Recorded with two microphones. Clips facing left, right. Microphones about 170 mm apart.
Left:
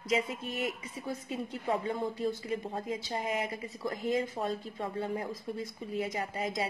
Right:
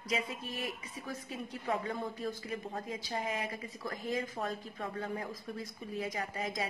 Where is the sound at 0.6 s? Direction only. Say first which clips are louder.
Left 5 dB; 25° left (ahead or behind).